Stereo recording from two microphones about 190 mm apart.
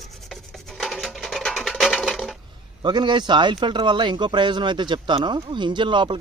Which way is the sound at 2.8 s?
25° right (ahead or behind).